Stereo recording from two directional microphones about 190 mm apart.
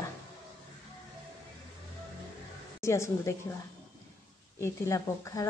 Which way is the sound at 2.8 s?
15° left (ahead or behind).